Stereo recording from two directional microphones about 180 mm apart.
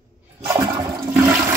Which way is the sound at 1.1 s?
10° right (ahead or behind).